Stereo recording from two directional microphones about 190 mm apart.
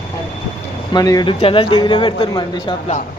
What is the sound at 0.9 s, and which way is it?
A man's voice, 20° left (ahead or behind).